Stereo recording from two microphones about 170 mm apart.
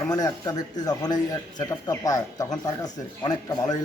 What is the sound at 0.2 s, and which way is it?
A man's voice, 20° left (ahead or behind).